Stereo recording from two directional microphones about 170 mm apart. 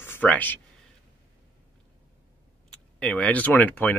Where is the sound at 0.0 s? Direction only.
10° left (ahead or behind).